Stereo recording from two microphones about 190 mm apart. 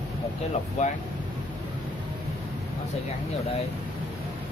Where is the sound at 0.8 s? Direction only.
40° left (ahead or behind).